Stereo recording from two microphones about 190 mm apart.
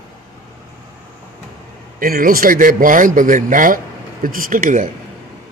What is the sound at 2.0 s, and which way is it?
A man's voice, 50° right (ahead or behind).